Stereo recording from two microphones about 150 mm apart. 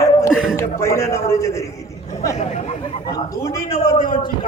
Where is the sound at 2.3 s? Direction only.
50° left (ahead or behind).